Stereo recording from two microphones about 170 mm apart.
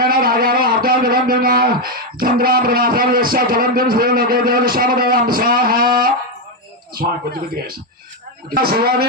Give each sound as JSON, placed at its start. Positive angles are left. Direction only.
{"t": 0.0, "sound": "a man's voice", "side_deg": -60}
{"t": 8.5, "sound": "a man's voice", "side_deg": -65}